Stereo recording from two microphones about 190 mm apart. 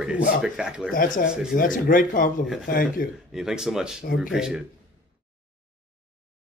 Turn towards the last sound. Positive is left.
turn(degrees=-5)  # may be behind; listen again after turning